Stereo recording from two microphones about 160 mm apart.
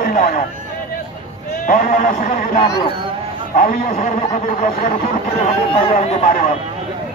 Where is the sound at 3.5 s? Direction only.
60° left (ahead or behind).